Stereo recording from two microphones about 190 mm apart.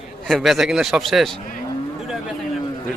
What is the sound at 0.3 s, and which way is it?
A man's voice, centre (ahead or behind).